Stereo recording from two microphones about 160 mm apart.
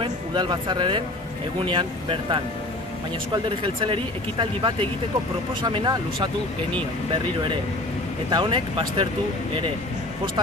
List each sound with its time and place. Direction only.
0.0 s speech: 30° right (ahead or behind)
3.4 s speech: 30° right (ahead or behind)
8.3 s speech: 30° right (ahead or behind)